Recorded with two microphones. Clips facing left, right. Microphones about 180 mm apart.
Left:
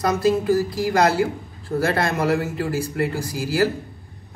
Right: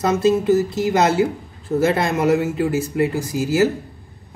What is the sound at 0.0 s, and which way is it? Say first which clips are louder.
Speech: right 3 dB; 25° right (ahead or behind).